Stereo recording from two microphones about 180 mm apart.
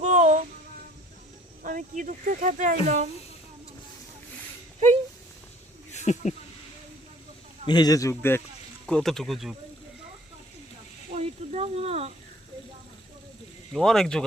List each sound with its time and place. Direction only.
0.0 s child singing: 40° right (ahead or behind)
1.6 s speech: 45° right (ahead or behind)
5.9 s bird: 40° left (ahead or behind)
7.7 s a man's voice: 20° left (ahead or behind)
8.9 s speech: 5° left (ahead or behind)
11.1 s a sound: 35° right (ahead or behind)
13.7 s speech: centre (ahead or behind)